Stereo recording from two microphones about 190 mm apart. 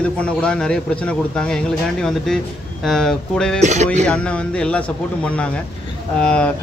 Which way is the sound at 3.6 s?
35° right (ahead or behind).